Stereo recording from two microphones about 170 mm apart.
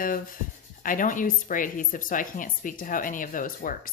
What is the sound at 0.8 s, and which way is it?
Speech, 50° left (ahead or behind).